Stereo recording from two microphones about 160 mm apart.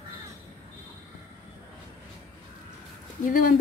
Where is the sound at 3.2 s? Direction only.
55° left (ahead or behind).